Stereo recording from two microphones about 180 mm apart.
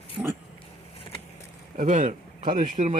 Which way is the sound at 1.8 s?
45° right (ahead or behind).